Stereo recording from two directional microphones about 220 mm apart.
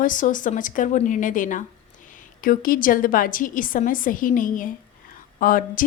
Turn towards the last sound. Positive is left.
turn(degrees=40)  # may be behind; listen again after turning